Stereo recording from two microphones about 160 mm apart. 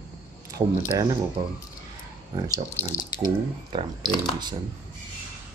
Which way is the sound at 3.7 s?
30° right (ahead or behind).